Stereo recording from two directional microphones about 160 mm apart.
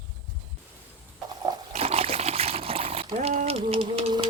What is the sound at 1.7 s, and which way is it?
Trickle, 40° right (ahead or behind).